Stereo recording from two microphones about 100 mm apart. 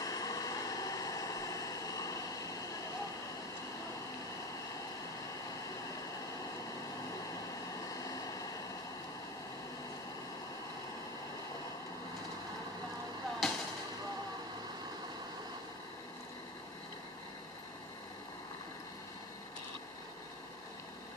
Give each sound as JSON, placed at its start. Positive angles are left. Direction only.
{"t": 0.0, "sound": "vehicle", "side_deg": 35}
{"t": 13.4, "sound": "fireworks", "side_deg": 0}